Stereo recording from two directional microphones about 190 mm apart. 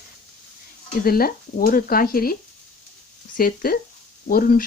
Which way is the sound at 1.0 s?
50° left (ahead or behind).